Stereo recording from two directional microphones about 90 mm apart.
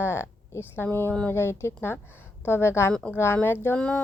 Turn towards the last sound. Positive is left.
turn(degrees=10)  # may be behind; listen again after turning